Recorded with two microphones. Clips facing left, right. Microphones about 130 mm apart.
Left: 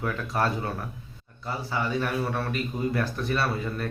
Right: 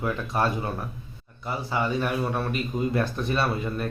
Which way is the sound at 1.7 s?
20° right (ahead or behind).